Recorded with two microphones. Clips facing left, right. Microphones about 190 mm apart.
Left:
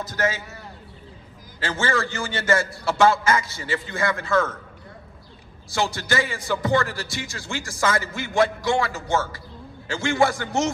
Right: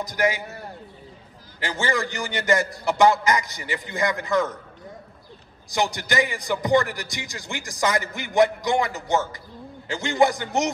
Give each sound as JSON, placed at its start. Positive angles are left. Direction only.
{"t": 0.0, "sound": "speech", "side_deg": -15}
{"t": 1.6, "sound": "speech", "side_deg": -15}
{"t": 5.7, "sound": "speech", "side_deg": -15}